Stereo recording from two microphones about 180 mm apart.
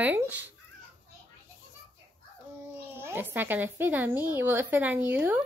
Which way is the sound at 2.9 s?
10° right (ahead or behind).